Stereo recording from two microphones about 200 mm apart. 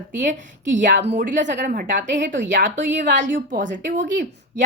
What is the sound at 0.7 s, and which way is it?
A woman's voice, 40° right (ahead or behind).